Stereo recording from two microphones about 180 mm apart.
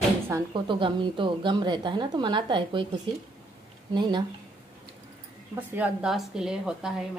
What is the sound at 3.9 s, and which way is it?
Speech, 25° right (ahead or behind).